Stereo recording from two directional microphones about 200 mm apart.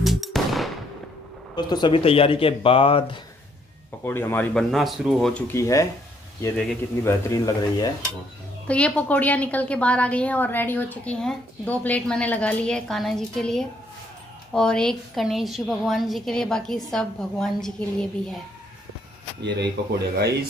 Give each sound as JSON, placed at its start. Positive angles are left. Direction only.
{"t": 0.0, "sound": "music", "side_deg": 0}
{"t": 1.5, "sound": "speech", "side_deg": 20}
{"t": 4.0, "sound": "a woman's voice", "side_deg": 10}
{"t": 6.4, "sound": "a woman's voice", "side_deg": 5}
{"t": 7.0, "sound": "a woman's voice", "side_deg": 15}
{"t": 8.6, "sound": "a woman's voice", "side_deg": 5}